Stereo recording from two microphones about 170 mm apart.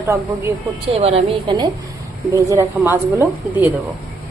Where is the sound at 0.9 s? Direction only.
35° right (ahead or behind); by 3.7 s 10° right (ahead or behind).